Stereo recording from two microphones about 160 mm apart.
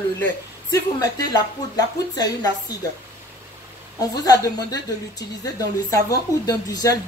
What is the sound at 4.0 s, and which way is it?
A woman's voice, 25° left (ahead or behind).